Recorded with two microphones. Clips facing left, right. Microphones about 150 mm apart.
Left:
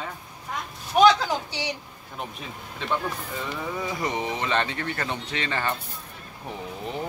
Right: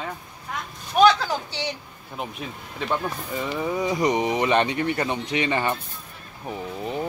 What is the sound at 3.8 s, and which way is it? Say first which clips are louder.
Speech: right 7 dB; 20° right (ahead or behind).